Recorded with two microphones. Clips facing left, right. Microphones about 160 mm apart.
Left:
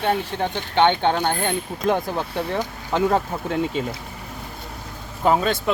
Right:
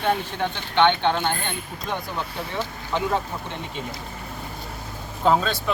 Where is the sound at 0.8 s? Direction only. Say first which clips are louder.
Left 1 dB; 45° left (ahead or behind).